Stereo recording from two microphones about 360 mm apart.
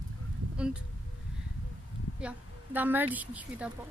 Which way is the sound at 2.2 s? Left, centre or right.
Centre.